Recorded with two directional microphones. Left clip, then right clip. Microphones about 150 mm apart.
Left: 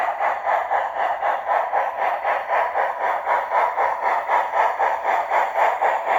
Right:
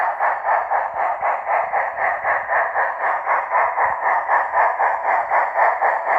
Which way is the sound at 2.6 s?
45° left (ahead or behind).